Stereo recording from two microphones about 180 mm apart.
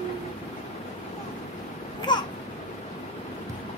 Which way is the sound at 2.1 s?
25° left (ahead or behind).